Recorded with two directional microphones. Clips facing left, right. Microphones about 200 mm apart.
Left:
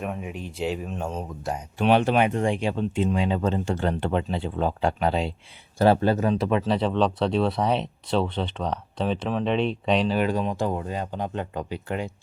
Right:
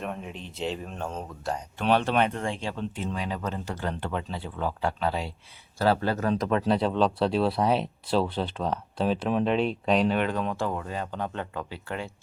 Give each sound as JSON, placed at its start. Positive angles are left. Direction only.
{"t": 0.0, "sound": "speech", "side_deg": 5}
{"t": 6.4, "sound": "speech", "side_deg": 5}